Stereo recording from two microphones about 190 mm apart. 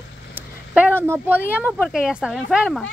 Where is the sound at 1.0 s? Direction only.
15° right (ahead or behind).